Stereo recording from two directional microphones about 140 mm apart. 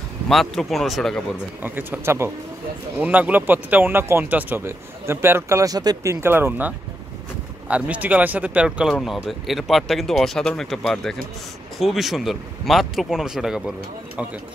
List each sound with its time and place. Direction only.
0.3 s speech: centre (ahead or behind)
1.6 s speech: 15° right (ahead or behind)
6.2 s speech: 15° right (ahead or behind)